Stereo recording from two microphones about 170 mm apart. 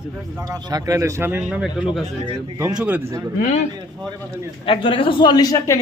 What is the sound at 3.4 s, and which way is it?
Speech, 45° left (ahead or behind).